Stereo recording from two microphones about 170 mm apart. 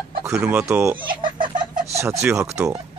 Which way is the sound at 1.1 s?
30° right (ahead or behind).